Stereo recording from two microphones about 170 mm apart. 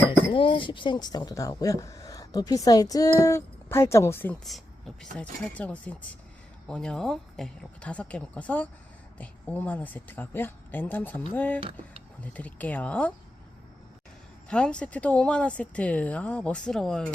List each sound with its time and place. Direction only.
0.3 s speech: 30° left (ahead or behind); by 4.4 s 10° left (ahead or behind)
4.4 s a woman's voice: centre (ahead or behind)
14.5 s speech: 5° left (ahead or behind)